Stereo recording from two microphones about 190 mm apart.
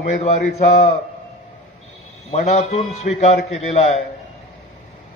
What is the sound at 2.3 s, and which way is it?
A man's voice, 35° left (ahead or behind).